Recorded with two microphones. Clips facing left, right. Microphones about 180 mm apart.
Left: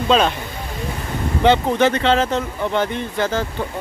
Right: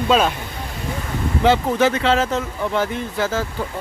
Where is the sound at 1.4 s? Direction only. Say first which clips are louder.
Left 1 dB; 5° right (ahead or behind).